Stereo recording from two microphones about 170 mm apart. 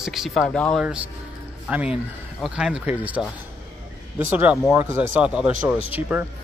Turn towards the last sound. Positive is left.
turn(degrees=-10)  # may be behind; listen again after turning